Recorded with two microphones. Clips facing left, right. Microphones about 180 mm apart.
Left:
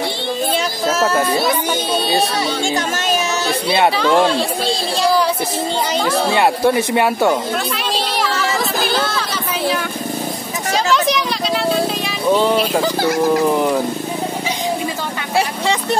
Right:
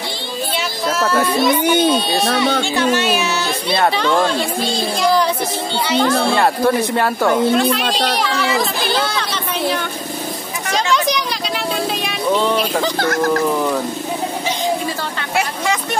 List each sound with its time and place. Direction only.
2.7 s speech: 45° left (ahead or behind)
3.7 s speech: 5° left (ahead or behind)
6.0 s speech: 10° left (ahead or behind)
8.8 s a sound: 5° left (ahead or behind)
12.4 s speech: 5° left (ahead or behind)